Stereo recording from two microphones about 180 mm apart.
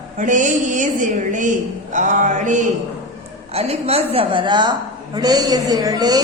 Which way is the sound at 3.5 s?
35° right (ahead or behind).